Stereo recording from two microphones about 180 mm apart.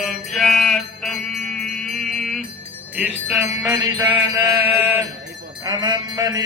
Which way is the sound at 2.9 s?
5° right (ahead or behind).